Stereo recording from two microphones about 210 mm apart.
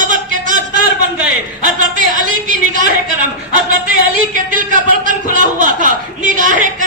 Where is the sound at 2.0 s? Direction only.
40° right (ahead or behind).